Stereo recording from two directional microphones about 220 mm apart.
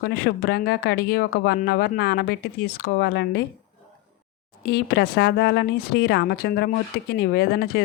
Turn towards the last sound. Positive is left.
turn(degrees=45)  # may be behind; listen again after turning